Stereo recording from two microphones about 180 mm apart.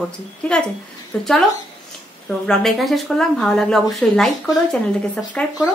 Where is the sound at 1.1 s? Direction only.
5° left (ahead or behind).